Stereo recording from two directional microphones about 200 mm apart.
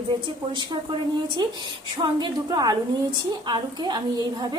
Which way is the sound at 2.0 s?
20° right (ahead or behind).